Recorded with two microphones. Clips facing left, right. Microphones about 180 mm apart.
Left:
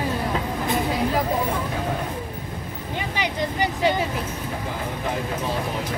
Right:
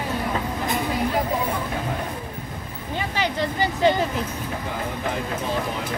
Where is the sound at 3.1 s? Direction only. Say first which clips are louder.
Right 1 dB; 15° left (ahead or behind).